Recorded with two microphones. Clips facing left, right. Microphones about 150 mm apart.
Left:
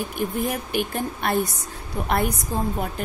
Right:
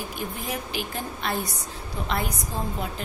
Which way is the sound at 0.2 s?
50° left (ahead or behind).